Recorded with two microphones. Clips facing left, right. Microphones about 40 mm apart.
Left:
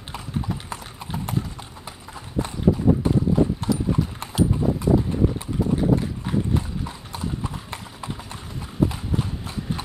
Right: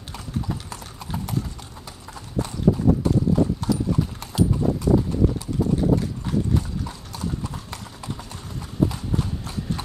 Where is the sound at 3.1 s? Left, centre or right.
Centre.